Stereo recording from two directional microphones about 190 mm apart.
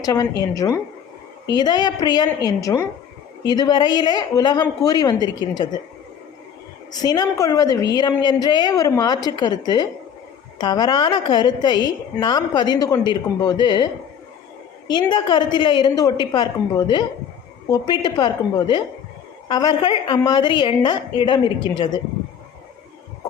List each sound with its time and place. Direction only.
0.0 s a woman's voice: 20° left (ahead or behind)
6.9 s a woman's voice: 20° left (ahead or behind)
15.1 s a woman's voice: 25° left (ahead or behind)